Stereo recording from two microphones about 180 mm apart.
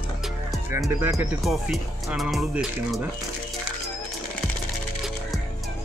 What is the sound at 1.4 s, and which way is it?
Speech, centre (ahead or behind).